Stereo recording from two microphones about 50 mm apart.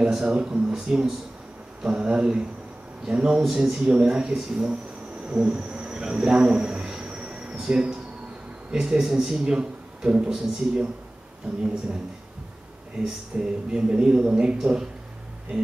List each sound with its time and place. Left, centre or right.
0.0 s a man's voice: centre
5.2 s a sound: right
7.5 s a man's voice: centre
13.0 s a man's voice: centre